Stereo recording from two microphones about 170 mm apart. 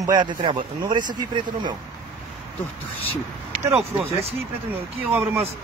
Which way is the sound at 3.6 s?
15° right (ahead or behind).